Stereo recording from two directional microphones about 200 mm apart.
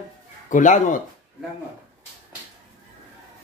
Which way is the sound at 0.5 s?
40° left (ahead or behind).